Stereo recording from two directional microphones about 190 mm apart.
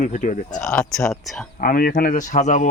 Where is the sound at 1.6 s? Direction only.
50° left (ahead or behind).